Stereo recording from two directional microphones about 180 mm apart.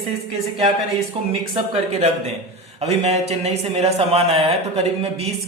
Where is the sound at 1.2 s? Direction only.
30° right (ahead or behind).